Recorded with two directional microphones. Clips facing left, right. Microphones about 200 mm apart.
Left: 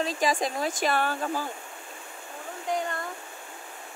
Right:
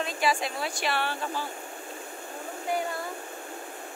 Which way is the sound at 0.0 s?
35° left (ahead or behind).